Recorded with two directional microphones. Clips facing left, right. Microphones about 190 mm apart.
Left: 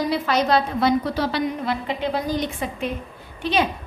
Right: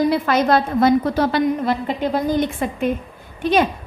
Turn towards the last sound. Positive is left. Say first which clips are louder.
# right 5 dB
turn(degrees=-50)  # may be behind; listen again after turning